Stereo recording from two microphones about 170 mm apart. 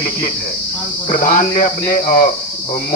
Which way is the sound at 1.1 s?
50° left (ahead or behind).